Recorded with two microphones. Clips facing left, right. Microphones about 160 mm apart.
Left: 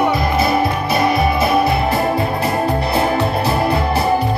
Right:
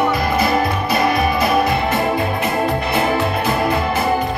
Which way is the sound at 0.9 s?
25° left (ahead or behind).